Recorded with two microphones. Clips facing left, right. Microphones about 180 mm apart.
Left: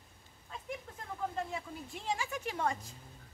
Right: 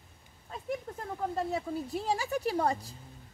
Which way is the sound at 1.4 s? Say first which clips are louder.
Right 7 dB; 40° right (ahead or behind).